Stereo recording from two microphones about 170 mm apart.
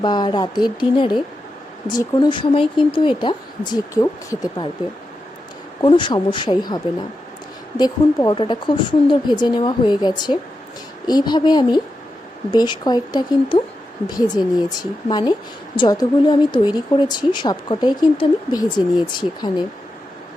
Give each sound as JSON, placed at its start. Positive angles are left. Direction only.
{"t": 0.0, "sound": "a woman's voice", "side_deg": 25}
{"t": 5.8, "sound": "a woman's voice", "side_deg": 30}